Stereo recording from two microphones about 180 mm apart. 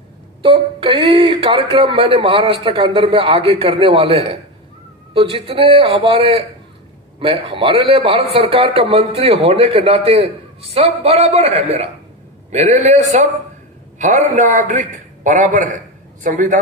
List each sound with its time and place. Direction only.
0.4 s a man's voice: 30° right (ahead or behind); by 16.5 s 45° right (ahead or behind)